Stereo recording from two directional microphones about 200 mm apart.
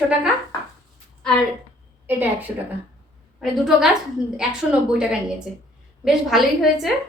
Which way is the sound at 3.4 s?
Centre (ahead or behind).